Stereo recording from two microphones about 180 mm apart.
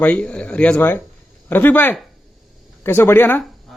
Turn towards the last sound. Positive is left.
turn(degrees=10)  # may be behind; listen again after turning